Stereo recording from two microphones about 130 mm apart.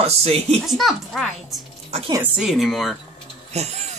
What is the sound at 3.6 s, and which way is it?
Speech, 55° right (ahead or behind).